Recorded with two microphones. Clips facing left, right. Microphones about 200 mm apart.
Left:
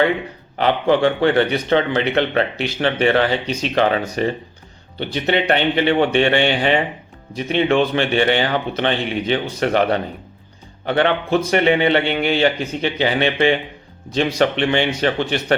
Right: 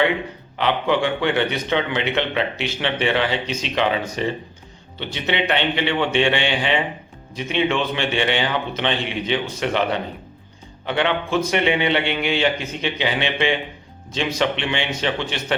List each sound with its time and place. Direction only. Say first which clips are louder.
0.6 s a man's voice: left 4 dB; 40° left (ahead or behind)
6.1 s speech: left 4 dB; 55° left (ahead or behind)
10.8 s a man's voice: left 4 dB; 45° left (ahead or behind)